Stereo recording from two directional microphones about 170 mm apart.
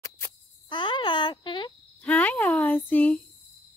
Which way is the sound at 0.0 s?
25° left (ahead or behind).